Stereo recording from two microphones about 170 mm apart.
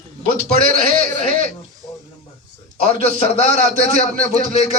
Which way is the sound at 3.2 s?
35° left (ahead or behind).